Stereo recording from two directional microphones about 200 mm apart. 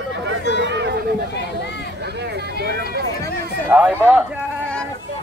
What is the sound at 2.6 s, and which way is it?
Speech, 50° right (ahead or behind).